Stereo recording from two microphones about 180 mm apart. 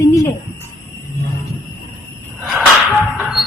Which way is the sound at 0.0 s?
20° left (ahead or behind).